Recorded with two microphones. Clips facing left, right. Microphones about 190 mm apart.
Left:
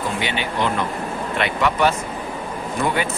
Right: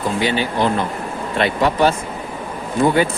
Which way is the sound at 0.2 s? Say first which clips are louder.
Right 6 dB; 35° right (ahead or behind).